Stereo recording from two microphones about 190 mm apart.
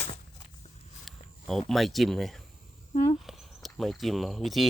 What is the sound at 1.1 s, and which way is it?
Speech, centre (ahead or behind).